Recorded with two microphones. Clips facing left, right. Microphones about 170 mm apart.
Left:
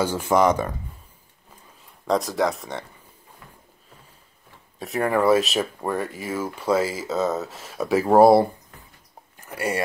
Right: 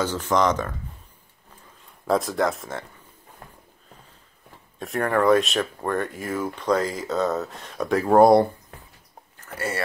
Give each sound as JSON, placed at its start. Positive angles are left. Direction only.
{"t": 0.0, "sound": "speech", "side_deg": 10}
{"t": 2.0, "sound": "speech", "side_deg": 0}
{"t": 3.4, "sound": "a sound", "side_deg": -45}
{"t": 4.7, "sound": "speech", "side_deg": 0}